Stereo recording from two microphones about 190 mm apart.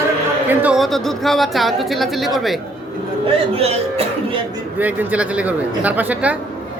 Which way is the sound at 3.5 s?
30° right (ahead or behind).